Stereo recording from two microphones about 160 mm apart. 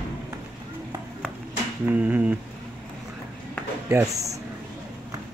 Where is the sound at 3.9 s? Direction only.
20° right (ahead or behind).